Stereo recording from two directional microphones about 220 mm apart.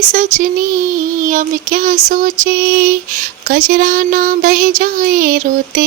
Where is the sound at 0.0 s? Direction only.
35° right (ahead or behind).